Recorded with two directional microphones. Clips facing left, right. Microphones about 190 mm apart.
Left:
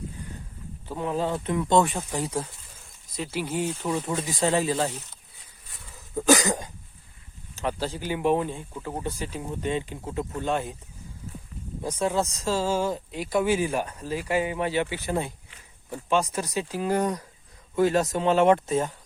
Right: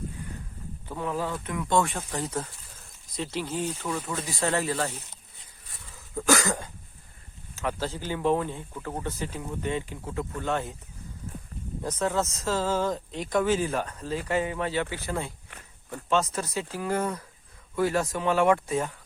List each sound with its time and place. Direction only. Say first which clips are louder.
0.9 s speech: left 3 dB; 20° left (ahead or behind)
6.2 s speech: left 4 dB; 15° left (ahead or behind)
11.8 s speech: left 2 dB; 10° left (ahead or behind)